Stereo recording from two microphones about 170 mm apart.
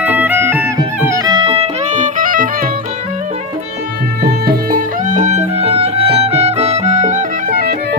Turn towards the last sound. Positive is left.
turn(degrees=-45)  # may be behind; listen again after turning